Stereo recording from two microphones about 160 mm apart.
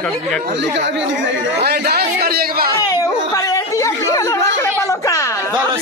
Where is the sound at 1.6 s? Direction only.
90° right; by 2.7 s 70° right (ahead or behind).